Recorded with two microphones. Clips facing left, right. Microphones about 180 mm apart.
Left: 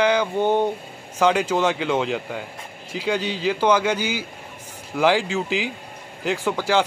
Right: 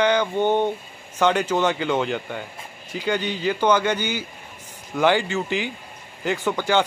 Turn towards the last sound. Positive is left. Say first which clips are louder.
# even
turn(degrees=0)  # may be behind; listen again after turning